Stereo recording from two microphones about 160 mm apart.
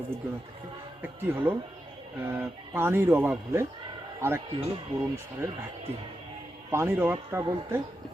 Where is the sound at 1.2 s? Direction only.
10° right (ahead or behind).